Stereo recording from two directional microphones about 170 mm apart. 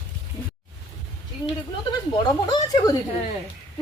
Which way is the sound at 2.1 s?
25° left (ahead or behind).